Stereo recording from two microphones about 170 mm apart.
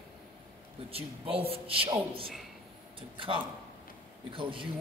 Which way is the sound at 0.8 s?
35° right (ahead or behind).